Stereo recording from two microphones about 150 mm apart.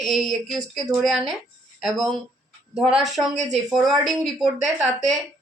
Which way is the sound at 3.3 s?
50° right (ahead or behind).